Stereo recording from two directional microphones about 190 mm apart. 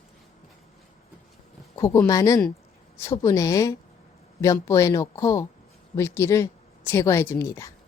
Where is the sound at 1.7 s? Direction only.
15° left (ahead or behind).